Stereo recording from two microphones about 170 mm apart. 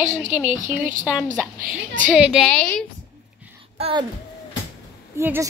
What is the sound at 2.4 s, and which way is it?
Speech, 5° left (ahead or behind).